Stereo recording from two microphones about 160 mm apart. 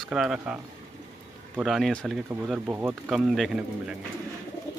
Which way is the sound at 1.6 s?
Centre (ahead or behind).